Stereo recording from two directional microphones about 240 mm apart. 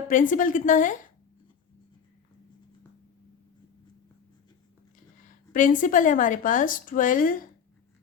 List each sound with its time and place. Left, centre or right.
0.1 s a woman's voice: left
5.5 s a woman's voice: left